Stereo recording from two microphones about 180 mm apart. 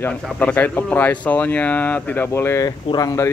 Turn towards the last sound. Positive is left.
turn(degrees=20)  # may be behind; listen again after turning